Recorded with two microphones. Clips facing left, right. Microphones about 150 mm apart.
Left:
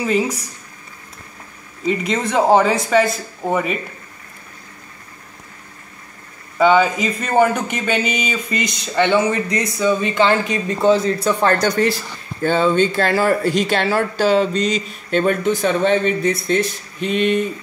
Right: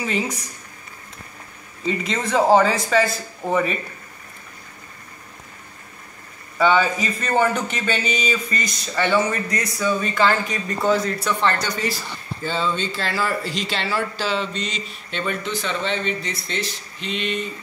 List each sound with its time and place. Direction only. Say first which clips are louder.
2.1 s speech: left 1 dB; 5° left (ahead or behind)
6.6 s speech: left 4 dB; 15° left (ahead or behind)
11.4 s speech: left 8 dB; 50° left (ahead or behind)